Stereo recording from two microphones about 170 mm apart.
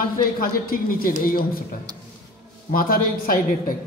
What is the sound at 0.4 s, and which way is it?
A woman's voice, 55° left (ahead or behind).